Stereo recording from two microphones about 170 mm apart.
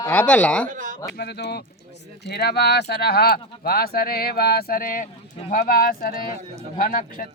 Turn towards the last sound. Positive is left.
turn(degrees=55)  # may be behind; listen again after turning